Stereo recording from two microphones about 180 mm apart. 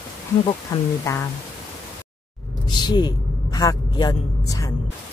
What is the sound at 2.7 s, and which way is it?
A man's voice, 25° left (ahead or behind).